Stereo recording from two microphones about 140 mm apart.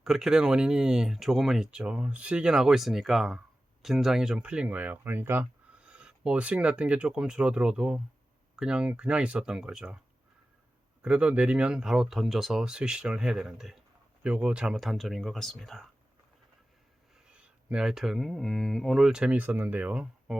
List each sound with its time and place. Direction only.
0.0 s speech: 5° right (ahead or behind)
11.0 s speech: 10° right (ahead or behind)
17.2 s speech: 5° right (ahead or behind)